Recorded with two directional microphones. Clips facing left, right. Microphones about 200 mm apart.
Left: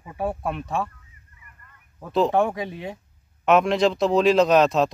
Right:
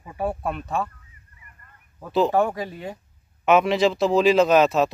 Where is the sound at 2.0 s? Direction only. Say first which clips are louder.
Even; centre (ahead or behind).